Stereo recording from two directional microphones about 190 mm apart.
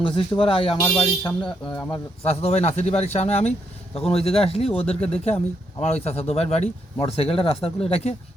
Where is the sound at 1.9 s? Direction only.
35° left (ahead or behind).